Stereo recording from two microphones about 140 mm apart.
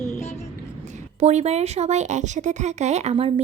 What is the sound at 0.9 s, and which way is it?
A woman's voice, 55° right (ahead or behind).